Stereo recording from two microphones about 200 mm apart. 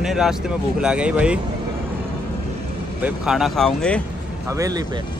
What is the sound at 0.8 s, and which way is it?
Music, 5° right (ahead or behind).